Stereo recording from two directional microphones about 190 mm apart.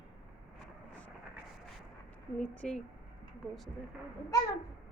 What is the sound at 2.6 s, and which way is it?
Speech, 5° left (ahead or behind).